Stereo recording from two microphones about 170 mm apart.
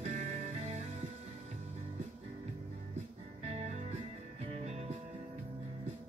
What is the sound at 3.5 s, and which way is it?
Music, 40° right (ahead or behind).